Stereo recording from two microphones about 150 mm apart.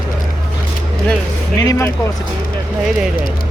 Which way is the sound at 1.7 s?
20° left (ahead or behind).